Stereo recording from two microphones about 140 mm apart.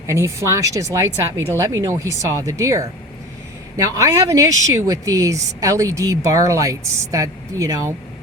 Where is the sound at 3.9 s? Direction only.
25° right (ahead or behind).